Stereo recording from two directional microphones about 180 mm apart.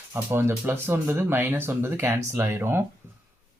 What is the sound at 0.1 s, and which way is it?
Speech, 15° right (ahead or behind).